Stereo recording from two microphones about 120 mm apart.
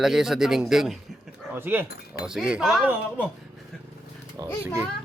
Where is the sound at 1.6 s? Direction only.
15° right (ahead or behind).